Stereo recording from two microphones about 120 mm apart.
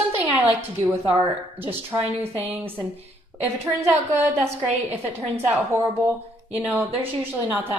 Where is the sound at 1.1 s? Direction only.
15° right (ahead or behind).